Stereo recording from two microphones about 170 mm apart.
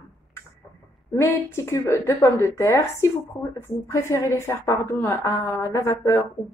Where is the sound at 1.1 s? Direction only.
15° left (ahead or behind).